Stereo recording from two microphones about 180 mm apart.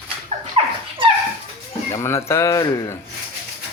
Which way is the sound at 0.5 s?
30° right (ahead or behind).